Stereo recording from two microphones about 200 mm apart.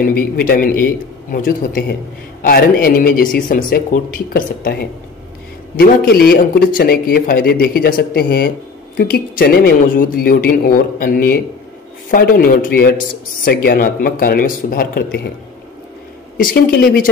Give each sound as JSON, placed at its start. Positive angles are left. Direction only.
{"t": 0.1, "sound": "a man's voice", "side_deg": 45}
{"t": 16.3, "sound": "a man's voice", "side_deg": 45}